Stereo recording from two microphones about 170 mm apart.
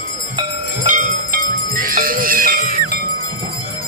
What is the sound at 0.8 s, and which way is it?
Jingle bell, 45° right (ahead or behind).